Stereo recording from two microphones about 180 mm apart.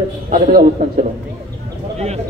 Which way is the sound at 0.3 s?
55° right (ahead or behind).